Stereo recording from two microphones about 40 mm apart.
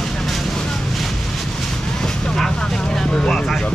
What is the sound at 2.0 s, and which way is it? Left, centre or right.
Speech, centre.